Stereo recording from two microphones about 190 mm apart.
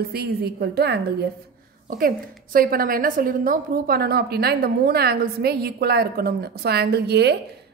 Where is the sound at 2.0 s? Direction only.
50° right (ahead or behind).